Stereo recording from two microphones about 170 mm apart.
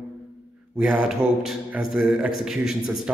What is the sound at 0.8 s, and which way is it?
A man's voice, 5° right (ahead or behind).